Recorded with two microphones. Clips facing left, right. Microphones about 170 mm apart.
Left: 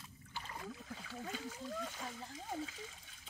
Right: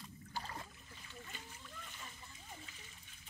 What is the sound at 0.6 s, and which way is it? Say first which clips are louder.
Speech: left 11 dB; 90° left.